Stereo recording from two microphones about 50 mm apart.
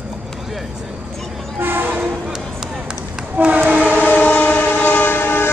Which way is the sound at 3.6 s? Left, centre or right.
Right.